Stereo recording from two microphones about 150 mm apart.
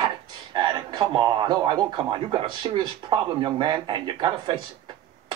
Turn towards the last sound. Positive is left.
turn(degrees=-35)  # may be behind; listen again after turning